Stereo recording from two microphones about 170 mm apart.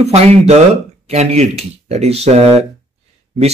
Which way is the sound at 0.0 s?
40° right (ahead or behind).